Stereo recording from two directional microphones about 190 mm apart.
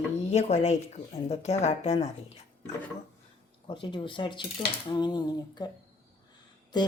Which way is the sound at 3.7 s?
25° left (ahead or behind).